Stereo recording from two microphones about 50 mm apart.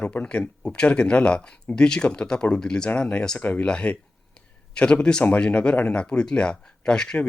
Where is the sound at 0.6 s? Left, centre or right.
Centre.